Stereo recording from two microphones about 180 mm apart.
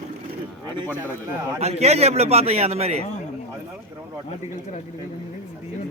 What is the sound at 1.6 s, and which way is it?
A man's voice, 35° right (ahead or behind).